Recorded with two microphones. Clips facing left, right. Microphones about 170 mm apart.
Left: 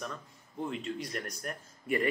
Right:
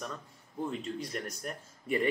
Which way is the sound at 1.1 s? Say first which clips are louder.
Even; centre (ahead or behind).